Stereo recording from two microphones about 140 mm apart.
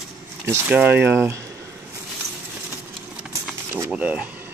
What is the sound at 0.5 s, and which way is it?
Speech, 10° right (ahead or behind).